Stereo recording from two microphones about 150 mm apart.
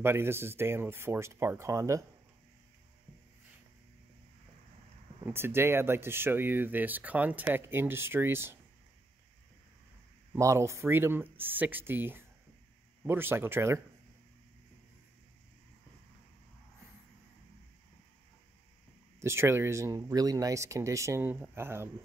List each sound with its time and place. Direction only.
0.0 s speech: 15° right (ahead or behind)
5.2 s speech: 15° right (ahead or behind)
10.3 s speech: 20° right (ahead or behind)
19.2 s speech: 15° right (ahead or behind)